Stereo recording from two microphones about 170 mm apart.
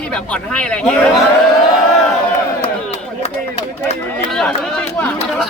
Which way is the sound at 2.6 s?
40° left (ahead or behind).